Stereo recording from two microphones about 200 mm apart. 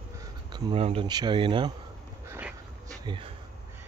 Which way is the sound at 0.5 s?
30° right (ahead or behind).